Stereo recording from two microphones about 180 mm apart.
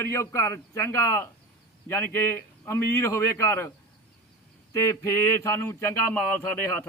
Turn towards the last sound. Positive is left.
turn(degrees=10)  # may be behind; listen again after turning